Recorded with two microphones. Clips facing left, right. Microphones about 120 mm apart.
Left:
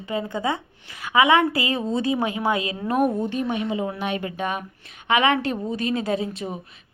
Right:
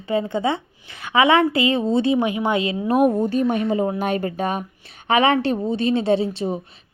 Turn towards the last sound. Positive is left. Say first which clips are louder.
# right 6 dB
turn(degrees=-30)  # may be behind; listen again after turning